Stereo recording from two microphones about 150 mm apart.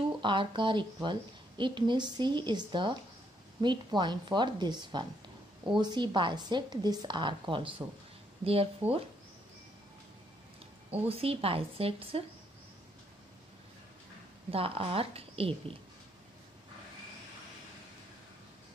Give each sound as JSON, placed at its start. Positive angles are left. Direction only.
{"t": 0.2, "sound": "a woman's voice", "side_deg": -35}
{"t": 10.9, "sound": "a woman's voice", "side_deg": -40}
{"t": 14.5, "sound": "a woman's voice", "side_deg": -40}